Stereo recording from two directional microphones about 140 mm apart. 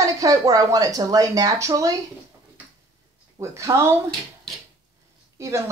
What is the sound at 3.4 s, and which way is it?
Speech, 20° right (ahead or behind).